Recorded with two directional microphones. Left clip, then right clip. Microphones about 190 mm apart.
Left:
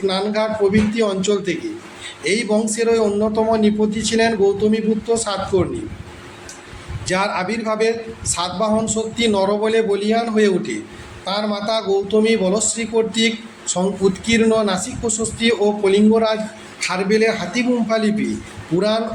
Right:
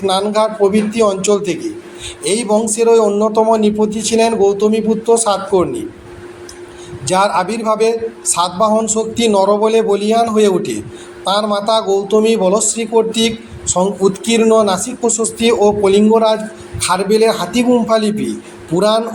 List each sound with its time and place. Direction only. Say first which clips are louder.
0.0 s a man's voice: right 6 dB; 15° right (ahead or behind)
7.0 s a man's voice: right 7 dB; 15° right (ahead or behind)